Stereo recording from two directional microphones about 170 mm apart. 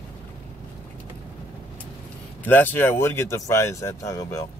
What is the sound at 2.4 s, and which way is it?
Speech, 10° left (ahead or behind).